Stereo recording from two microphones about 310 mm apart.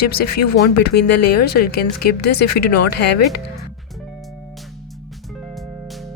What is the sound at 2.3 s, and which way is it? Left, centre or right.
Speech, left.